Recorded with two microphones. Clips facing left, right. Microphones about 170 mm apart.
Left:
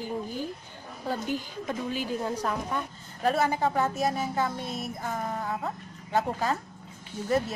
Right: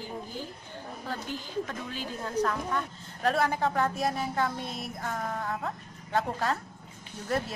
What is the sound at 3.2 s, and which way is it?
A woman's voice, centre (ahead or behind).